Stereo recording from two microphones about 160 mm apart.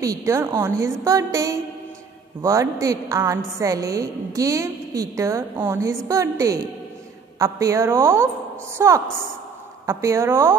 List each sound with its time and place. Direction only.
0.0 s a woman's voice: 20° right (ahead or behind)